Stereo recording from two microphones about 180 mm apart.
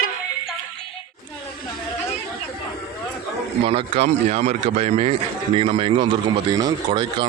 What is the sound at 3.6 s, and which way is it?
A man's voice, 30° right (ahead or behind).